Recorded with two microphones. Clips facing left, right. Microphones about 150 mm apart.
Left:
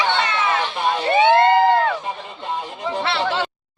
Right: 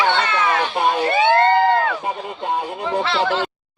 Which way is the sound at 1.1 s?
20° left (ahead or behind).